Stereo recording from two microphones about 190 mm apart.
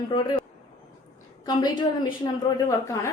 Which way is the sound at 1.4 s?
20° left (ahead or behind).